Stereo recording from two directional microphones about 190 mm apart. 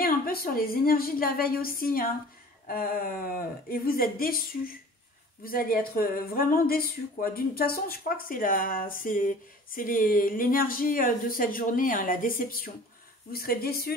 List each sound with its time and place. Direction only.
0.0 s speech: 50° left (ahead or behind)